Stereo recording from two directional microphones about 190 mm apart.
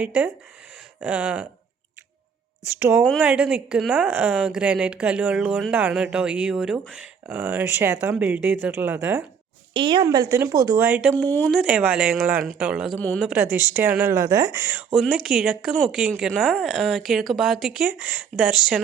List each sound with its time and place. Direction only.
0.0 s a woman's voice: 5° right (ahead or behind)
2.7 s a woman's voice: 10° right (ahead or behind)
9.7 s a woman's voice: 25° right (ahead or behind); by 11.2 s 10° right (ahead or behind)
11.2 s speech: 10° left (ahead or behind)
11.5 s a woman's voice: 10° right (ahead or behind)
13.0 s speech: 10° left (ahead or behind)
13.2 s a woman's voice: 10° right (ahead or behind)
14.9 s a woman's voice: centre (ahead or behind)